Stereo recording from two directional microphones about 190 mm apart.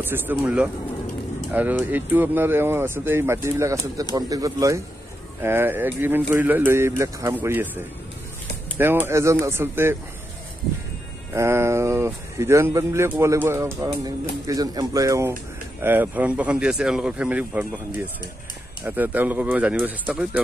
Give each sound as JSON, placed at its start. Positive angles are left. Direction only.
{"t": 0.0, "sound": "speech", "side_deg": -10}
{"t": 9.0, "sound": "speech", "side_deg": -15}
{"t": 11.3, "sound": "speech", "side_deg": -15}